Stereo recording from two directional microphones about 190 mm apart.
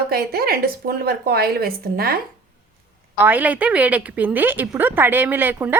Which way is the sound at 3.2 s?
10° right (ahead or behind).